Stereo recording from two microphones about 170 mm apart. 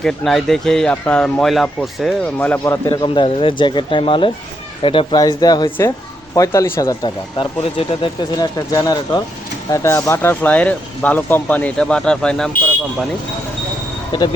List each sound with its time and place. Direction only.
0.0 s speech: centre (ahead or behind); by 3.0 s 20° left (ahead or behind)
3.0 s speech: 30° left (ahead or behind)
7.3 s speech: 30° left (ahead or behind); by 12.5 s 5° left (ahead or behind)